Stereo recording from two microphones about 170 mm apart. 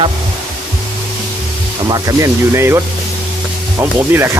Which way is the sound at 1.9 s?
20° right (ahead or behind).